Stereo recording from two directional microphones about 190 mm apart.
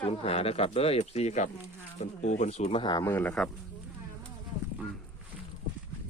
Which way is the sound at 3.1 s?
10° left (ahead or behind).